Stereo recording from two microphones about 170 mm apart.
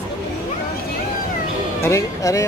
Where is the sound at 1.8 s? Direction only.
15° left (ahead or behind).